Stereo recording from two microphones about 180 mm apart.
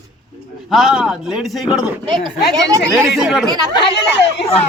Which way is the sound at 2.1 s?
25° right (ahead or behind).